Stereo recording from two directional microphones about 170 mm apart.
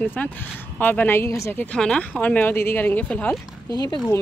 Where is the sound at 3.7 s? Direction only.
25° left (ahead or behind).